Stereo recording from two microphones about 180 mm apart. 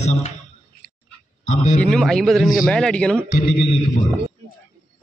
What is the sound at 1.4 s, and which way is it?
Speech, 40° left (ahead or behind).